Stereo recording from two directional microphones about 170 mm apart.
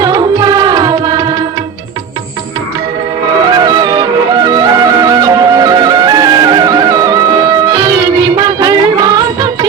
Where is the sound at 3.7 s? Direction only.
25° right (ahead or behind).